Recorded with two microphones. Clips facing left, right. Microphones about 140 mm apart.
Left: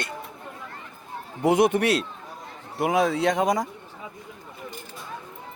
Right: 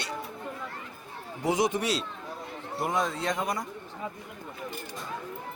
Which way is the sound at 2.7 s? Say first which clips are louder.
Left 7 dB; 70° left (ahead or behind).